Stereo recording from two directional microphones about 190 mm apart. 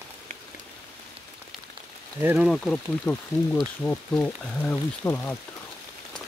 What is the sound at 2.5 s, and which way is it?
Speech, 5° left (ahead or behind).